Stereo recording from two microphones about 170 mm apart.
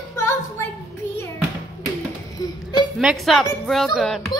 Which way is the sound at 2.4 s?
25° left (ahead or behind).